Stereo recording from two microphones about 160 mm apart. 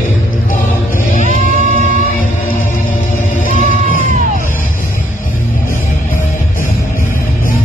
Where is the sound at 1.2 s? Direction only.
50° right (ahead or behind).